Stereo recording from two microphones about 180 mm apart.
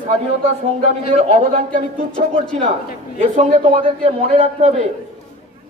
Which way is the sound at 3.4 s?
40° right (ahead or behind).